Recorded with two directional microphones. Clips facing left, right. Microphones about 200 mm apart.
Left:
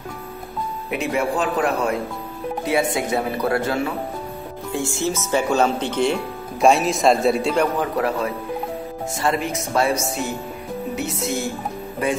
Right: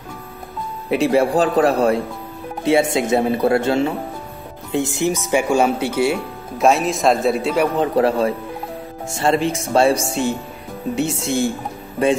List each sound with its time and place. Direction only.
0.8 s a man's voice: 30° right (ahead or behind); by 7.7 s 5° right (ahead or behind)
7.7 s speech: 25° right (ahead or behind)